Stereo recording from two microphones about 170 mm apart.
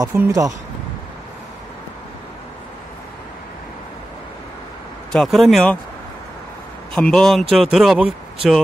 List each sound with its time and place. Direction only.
0.0 s speech: 15° right (ahead or behind)
5.1 s speech: centre (ahead or behind)
6.9 s speech: 5° left (ahead or behind)